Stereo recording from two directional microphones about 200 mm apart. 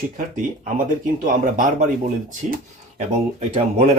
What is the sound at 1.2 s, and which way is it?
Speech, 45° right (ahead or behind).